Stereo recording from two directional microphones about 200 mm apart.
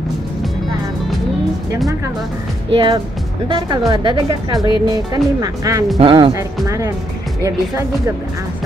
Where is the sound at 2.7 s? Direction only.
25° right (ahead or behind).